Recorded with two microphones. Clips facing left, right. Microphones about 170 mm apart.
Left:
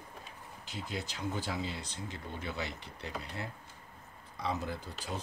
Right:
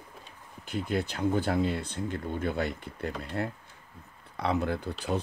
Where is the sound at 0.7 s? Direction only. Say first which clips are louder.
Right 10 dB; 55° right (ahead or behind).